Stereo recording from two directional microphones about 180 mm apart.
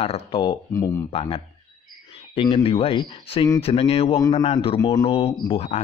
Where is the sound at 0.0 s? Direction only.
30° left (ahead or behind).